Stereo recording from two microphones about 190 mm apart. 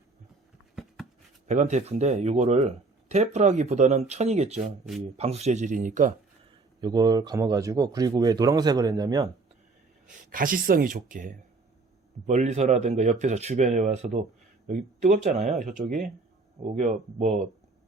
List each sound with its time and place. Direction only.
1.5 s speech: 40° right (ahead or behind)
6.8 s speech: 20° right (ahead or behind)
10.1 s speech: 45° right (ahead or behind)